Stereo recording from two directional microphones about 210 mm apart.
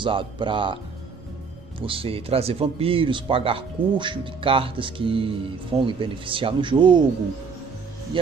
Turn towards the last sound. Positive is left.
turn(degrees=-20)  # may be behind; listen again after turning